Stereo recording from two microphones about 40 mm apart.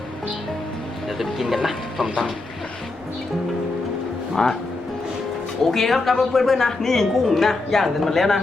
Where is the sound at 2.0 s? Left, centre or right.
Centre.